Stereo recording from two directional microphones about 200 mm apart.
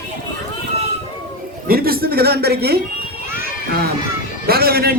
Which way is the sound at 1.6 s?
50° right (ahead or behind).